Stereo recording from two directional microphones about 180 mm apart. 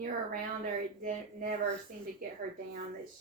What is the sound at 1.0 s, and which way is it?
Speech, 45° right (ahead or behind).